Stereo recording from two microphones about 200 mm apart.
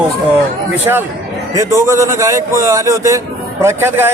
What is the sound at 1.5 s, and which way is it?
A man's voice, 15° right (ahead or behind).